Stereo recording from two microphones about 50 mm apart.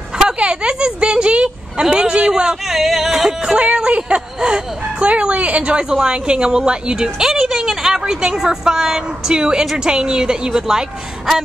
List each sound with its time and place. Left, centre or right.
0.4 s a sound: centre
2.7 s yodeling: centre
3.5 s a woman's voice: right